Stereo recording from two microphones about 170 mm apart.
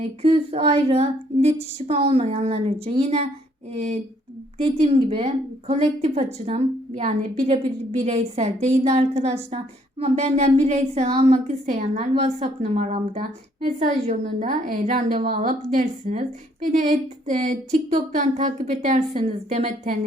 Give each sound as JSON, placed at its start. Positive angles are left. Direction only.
{"t": 0.0, "sound": "a woman's voice", "side_deg": -35}
{"t": 17.2, "sound": "a woman's voice", "side_deg": -50}
{"t": 19.6, "sound": "a woman's voice", "side_deg": -50}